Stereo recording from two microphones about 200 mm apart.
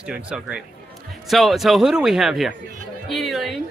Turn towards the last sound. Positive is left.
turn(degrees=0)  # may be behind; listen again after turning